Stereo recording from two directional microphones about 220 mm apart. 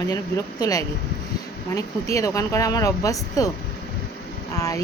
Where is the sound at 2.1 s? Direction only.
15° left (ahead or behind).